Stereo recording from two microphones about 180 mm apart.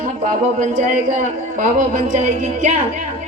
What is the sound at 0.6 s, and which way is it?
A man's voice, 45° right (ahead or behind).